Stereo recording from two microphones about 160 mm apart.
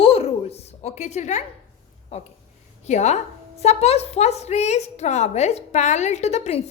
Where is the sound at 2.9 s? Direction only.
45° left (ahead or behind).